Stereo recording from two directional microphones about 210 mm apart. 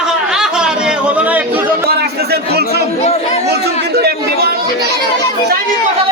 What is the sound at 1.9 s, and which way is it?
Chatter, 50° right (ahead or behind).